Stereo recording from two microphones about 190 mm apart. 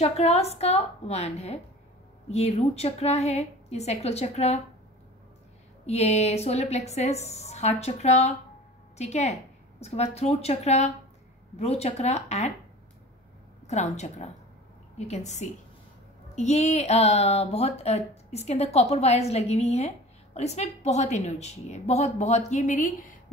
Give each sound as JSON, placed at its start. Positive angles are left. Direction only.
{"t": 0.0, "sound": "speech", "side_deg": 35}
{"t": 5.9, "sound": "a woman's voice", "side_deg": 35}
{"t": 13.7, "sound": "speech", "side_deg": 35}